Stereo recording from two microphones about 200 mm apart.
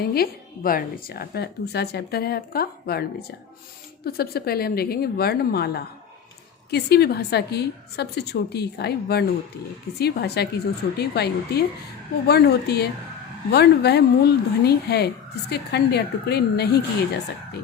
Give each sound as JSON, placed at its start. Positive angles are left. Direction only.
{"t": 0.0, "sound": "a woman's voice", "side_deg": 50}